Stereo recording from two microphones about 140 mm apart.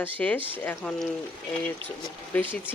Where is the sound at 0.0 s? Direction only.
10° left (ahead or behind).